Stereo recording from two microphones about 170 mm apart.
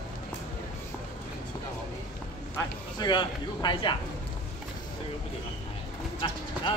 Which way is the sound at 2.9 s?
25° left (ahead or behind).